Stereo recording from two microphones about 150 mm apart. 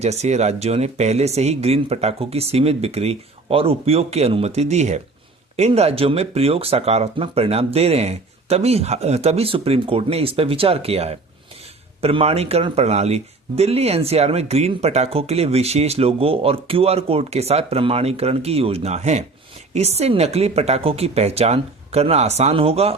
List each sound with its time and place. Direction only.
0.0 s speech: 45° right (ahead or behind)